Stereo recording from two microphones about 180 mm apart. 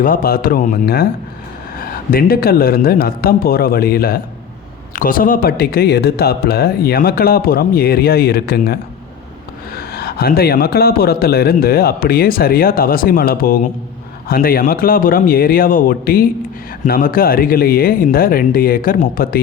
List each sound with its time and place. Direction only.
0.0 s a man's voice: 55° left (ahead or behind)